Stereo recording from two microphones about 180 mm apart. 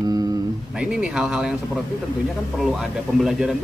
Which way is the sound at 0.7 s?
5° right (ahead or behind).